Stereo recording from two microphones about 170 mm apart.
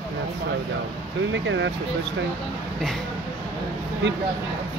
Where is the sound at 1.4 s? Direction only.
90° right.